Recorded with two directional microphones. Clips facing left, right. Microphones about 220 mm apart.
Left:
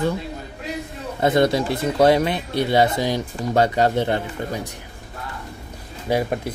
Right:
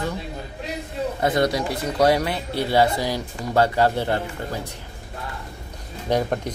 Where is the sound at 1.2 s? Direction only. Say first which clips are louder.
Left 4 dB; 25° left (ahead or behind).